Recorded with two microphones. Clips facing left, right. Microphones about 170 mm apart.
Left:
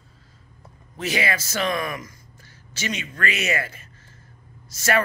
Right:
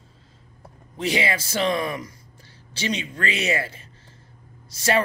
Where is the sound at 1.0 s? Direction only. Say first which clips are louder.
Right 1 dB; 25° right (ahead or behind).